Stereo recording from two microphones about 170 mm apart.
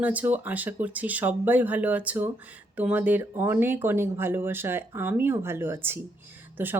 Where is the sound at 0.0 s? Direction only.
10° right (ahead or behind).